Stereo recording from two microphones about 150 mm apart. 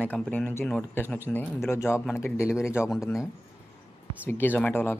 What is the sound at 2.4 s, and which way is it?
Speech, 5° right (ahead or behind).